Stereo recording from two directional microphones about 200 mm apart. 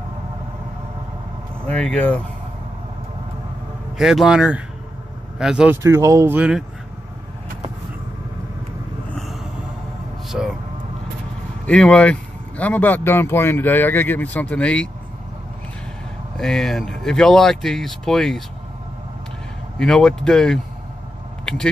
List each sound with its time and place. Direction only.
1.7 s a man's voice: 5° left (ahead or behind)
4.0 s speech: centre (ahead or behind)
9.1 s a sound: centre (ahead or behind)
11.6 s a man's voice: 5° left (ahead or behind)
16.3 s speech: 5° left (ahead or behind)
19.8 s speech: 5° left (ahead or behind)